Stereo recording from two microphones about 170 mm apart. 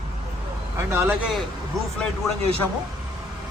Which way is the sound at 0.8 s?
15° right (ahead or behind).